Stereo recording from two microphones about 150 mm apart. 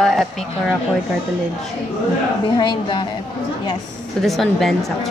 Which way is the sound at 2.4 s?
30° left (ahead or behind).